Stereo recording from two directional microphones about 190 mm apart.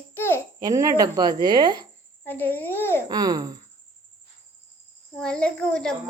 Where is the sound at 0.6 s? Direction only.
20° right (ahead or behind).